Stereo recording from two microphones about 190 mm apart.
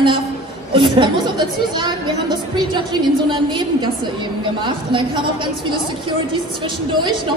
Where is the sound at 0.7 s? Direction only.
25° right (ahead or behind).